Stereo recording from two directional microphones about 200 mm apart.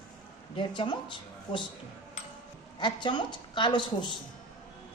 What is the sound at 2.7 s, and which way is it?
A woman's voice, 20° left (ahead or behind).